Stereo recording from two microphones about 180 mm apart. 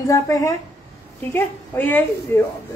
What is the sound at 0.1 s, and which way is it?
A woman's voice, 20° left (ahead or behind).